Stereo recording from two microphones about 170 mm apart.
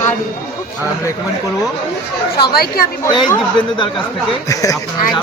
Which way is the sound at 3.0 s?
20° left (ahead or behind).